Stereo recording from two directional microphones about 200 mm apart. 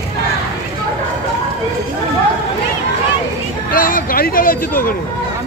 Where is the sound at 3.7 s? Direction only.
45° left (ahead or behind).